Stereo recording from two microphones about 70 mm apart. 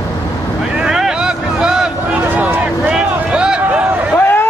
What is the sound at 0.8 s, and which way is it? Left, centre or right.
Vehicle, centre.